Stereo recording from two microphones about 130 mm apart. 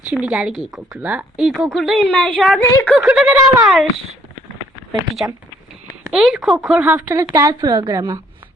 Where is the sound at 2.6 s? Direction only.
25° left (ahead or behind).